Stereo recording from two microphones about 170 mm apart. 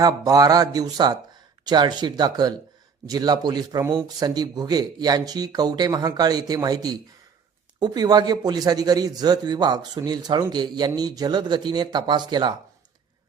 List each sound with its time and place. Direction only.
0.0 s a man's voice: 20° right (ahead or behind)